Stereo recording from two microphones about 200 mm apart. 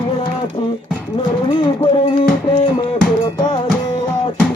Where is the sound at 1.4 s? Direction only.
25° left (ahead or behind).